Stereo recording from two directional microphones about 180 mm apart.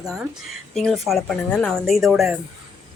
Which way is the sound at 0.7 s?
Centre (ahead or behind).